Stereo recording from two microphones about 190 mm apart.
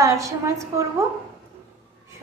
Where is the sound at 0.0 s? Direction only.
15° right (ahead or behind).